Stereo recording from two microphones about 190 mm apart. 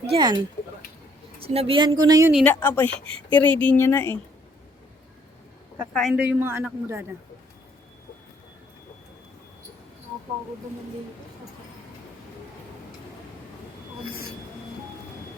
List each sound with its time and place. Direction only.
0.1 s a woman's voice: 25° right (ahead or behind)
2.3 s a woman's voice: 5° left (ahead or behind)
5.9 s a woman's voice: centre (ahead or behind)
14.1 s speech: 90° right